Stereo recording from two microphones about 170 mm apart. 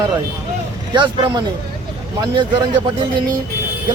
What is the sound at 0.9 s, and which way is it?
Speech, 25° right (ahead or behind).